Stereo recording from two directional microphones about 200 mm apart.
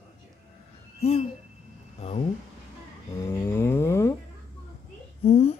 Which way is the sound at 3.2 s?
15° left (ahead or behind).